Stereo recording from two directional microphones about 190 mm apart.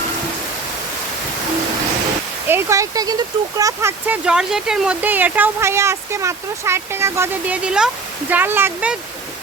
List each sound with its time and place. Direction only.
2.5 s speech: 15° right (ahead or behind)